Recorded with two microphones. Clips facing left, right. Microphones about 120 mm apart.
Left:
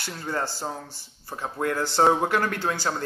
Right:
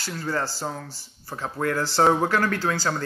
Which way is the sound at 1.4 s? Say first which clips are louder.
Right 1 dB; 15° left (ahead or behind).